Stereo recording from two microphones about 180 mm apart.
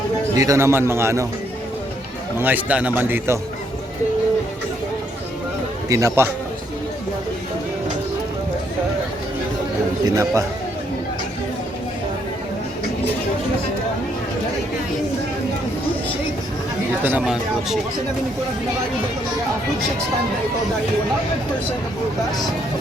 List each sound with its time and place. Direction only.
0.3 s a man's voice: 15° right (ahead or behind)
2.4 s a man's voice: 10° right (ahead or behind)
5.9 s a man's voice: 15° right (ahead or behind)
10.1 s a man's voice: 20° right (ahead or behind)
17.0 s a man's voice: 10° right (ahead or behind)